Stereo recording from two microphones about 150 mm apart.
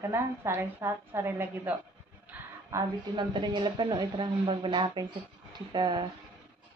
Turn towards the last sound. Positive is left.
turn(degrees=-30)  # may be behind; listen again after turning